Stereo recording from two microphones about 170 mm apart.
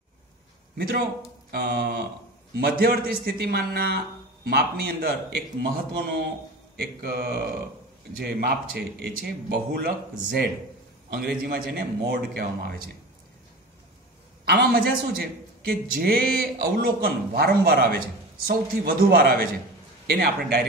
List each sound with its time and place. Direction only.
0.7 s mantra: 65° right (ahead or behind)
2.5 s a man's voice: 65° right (ahead or behind)
14.4 s a man's voice: 65° right (ahead or behind)